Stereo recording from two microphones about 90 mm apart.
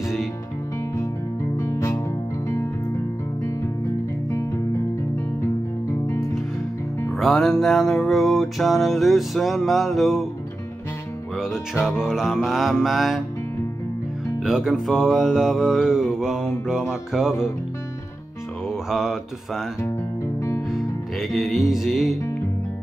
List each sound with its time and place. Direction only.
1.6 s music: 30° left (ahead or behind)
4.3 s music: 35° left (ahead or behind)
7.2 s music: centre (ahead or behind)
11.3 s music: 5° right (ahead or behind)
14.4 s music: 5° right (ahead or behind)
18.7 s mantra: 5° right (ahead or behind)
20.3 s music: 30° left (ahead or behind)
20.7 s music: centre (ahead or behind)